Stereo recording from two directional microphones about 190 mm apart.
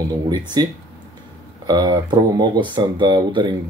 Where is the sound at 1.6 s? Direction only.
20° right (ahead or behind).